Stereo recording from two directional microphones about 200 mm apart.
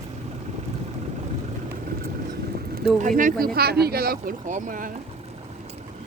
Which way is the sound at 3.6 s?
50° right (ahead or behind).